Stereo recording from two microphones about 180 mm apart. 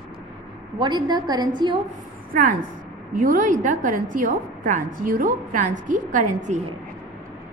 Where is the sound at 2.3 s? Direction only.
50° right (ahead or behind).